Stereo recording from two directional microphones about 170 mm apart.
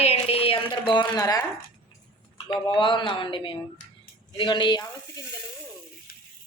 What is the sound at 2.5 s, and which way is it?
Speech, 30° left (ahead or behind).